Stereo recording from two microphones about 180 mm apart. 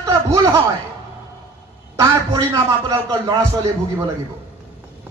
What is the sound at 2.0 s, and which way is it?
A man's voice, 15° right (ahead or behind).